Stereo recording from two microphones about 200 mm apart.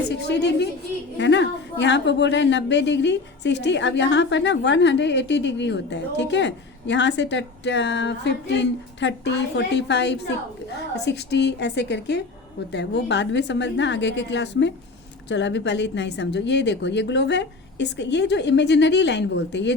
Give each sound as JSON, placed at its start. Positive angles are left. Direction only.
{"t": 0.1, "sound": "a woman's voice", "side_deg": 60}